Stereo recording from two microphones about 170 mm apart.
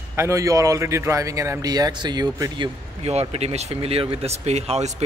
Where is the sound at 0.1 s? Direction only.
15° right (ahead or behind).